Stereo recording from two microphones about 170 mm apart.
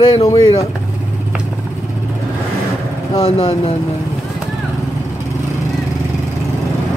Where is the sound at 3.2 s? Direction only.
35° left (ahead or behind).